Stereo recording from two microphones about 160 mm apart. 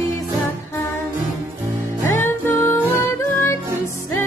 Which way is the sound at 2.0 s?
15° left (ahead or behind).